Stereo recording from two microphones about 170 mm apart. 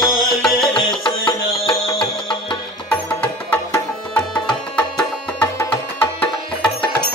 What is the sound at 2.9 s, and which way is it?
Music, 10° left (ahead or behind).